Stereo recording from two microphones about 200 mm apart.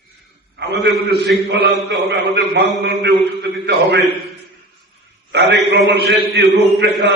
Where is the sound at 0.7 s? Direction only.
60° right (ahead or behind).